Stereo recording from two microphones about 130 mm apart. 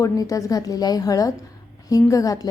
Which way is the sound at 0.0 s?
25° left (ahead or behind).